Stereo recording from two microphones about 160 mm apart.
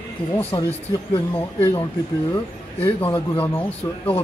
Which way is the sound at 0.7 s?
10° left (ahead or behind).